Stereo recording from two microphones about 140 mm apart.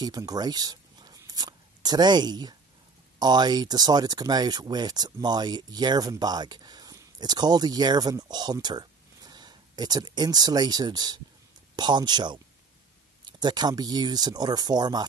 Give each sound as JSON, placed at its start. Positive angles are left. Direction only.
{"t": 0.0, "sound": "speech", "side_deg": -25}